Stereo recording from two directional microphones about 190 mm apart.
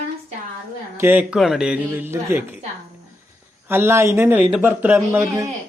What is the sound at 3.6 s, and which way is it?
Speech, 10° right (ahead or behind).